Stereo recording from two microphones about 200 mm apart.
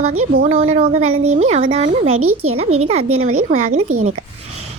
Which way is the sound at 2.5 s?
30° right (ahead or behind).